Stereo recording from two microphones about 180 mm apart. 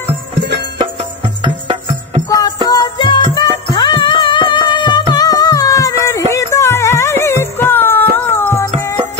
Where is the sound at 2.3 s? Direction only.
20° left (ahead or behind).